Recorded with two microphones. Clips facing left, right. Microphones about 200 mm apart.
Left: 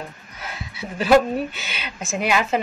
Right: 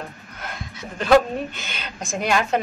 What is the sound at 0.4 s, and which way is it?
Speech, 5° left (ahead or behind).